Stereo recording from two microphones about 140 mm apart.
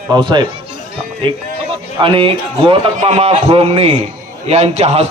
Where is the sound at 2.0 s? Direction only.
40° right (ahead or behind).